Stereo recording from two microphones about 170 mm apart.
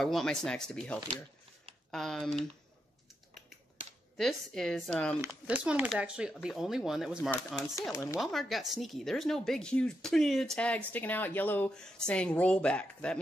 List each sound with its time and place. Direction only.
0.0 s speech: centre (ahead or behind)
4.2 s speech: centre (ahead or behind)
5.2 s speech: 10° right (ahead or behind)
7.9 s speech: 15° left (ahead or behind)
8.2 s speech: centre (ahead or behind)